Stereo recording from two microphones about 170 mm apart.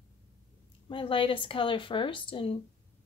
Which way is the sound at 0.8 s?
30° left (ahead or behind).